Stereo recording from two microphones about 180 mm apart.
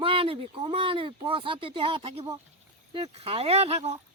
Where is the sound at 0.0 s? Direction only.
30° right (ahead or behind).